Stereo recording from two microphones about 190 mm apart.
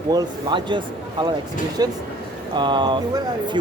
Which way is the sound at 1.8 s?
20° right (ahead or behind).